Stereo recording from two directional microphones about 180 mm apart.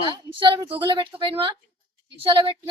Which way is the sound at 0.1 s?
25° right (ahead or behind).